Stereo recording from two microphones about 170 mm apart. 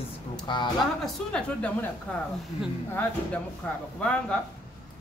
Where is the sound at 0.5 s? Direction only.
25° left (ahead or behind).